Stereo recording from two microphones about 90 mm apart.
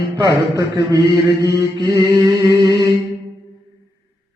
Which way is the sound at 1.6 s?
35° right (ahead or behind).